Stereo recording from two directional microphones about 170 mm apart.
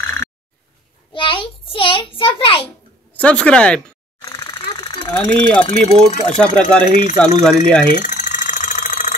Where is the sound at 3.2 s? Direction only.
5° left (ahead or behind).